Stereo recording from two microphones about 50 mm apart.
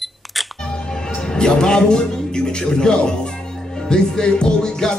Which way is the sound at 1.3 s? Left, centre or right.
Centre.